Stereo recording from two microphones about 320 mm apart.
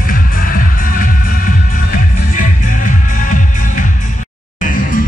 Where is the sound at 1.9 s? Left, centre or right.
Left.